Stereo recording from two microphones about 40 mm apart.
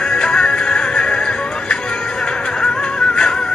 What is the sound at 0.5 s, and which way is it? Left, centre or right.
Music, left.